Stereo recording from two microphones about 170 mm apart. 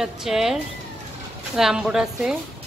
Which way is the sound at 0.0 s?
5° right (ahead or behind).